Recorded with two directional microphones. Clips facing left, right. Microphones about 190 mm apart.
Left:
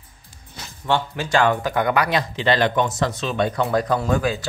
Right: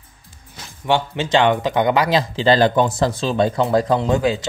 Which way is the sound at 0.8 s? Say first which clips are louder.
Right 3 dB; 20° right (ahead or behind).